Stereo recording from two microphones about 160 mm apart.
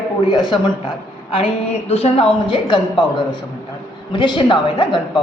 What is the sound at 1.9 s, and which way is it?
Speech, 40° left (ahead or behind).